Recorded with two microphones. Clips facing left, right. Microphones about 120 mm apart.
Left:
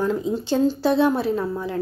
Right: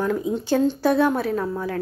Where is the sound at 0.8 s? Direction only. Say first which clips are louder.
Left 1 dB; 25° left (ahead or behind).